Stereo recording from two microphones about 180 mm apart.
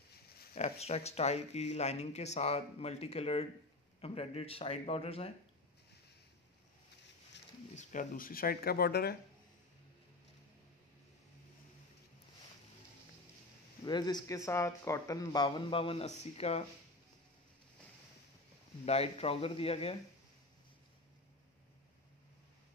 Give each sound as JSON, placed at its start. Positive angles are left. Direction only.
{"t": 0.6, "sound": "speech", "side_deg": 35}
{"t": 7.7, "sound": "speech", "side_deg": 45}
{"t": 13.8, "sound": "speech", "side_deg": 25}
{"t": 18.9, "sound": "speech", "side_deg": 35}